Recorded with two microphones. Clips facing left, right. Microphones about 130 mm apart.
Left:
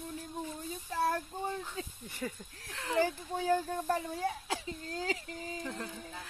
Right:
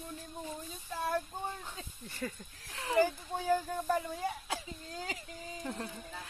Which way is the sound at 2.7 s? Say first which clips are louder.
Right 2 dB; 5° right (ahead or behind).